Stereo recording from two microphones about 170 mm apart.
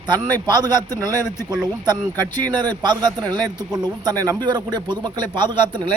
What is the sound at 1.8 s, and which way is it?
Speech, 25° right (ahead or behind).